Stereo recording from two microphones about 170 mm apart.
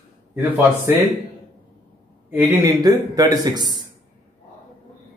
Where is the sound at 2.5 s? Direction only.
20° right (ahead or behind).